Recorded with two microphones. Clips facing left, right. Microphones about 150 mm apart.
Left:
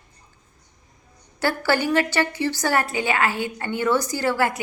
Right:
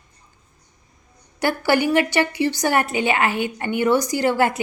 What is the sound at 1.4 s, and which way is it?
A woman's voice, 15° right (ahead or behind).